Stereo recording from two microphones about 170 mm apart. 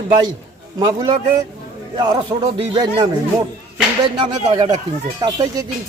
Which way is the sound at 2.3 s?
25° right (ahead or behind).